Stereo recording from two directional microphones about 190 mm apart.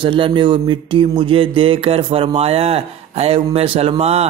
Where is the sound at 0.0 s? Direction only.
25° right (ahead or behind).